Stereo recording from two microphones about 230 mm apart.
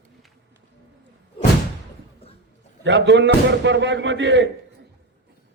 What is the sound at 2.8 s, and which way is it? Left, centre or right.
A man's voice, right.